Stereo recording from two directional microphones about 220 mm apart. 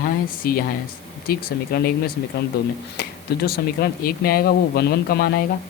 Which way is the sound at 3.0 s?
45° left (ahead or behind).